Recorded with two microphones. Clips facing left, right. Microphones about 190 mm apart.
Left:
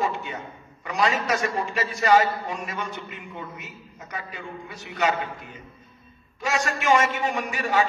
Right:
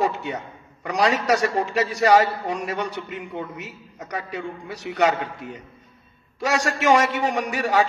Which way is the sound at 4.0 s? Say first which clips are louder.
Right 6 dB; 70° right (ahead or behind).